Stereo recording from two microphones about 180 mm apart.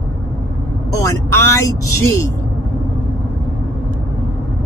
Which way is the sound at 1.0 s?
15° left (ahead or behind).